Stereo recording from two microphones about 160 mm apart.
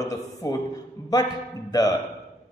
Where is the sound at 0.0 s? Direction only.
20° left (ahead or behind).